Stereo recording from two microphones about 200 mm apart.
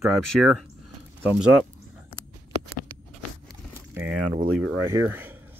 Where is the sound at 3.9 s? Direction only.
10° right (ahead or behind).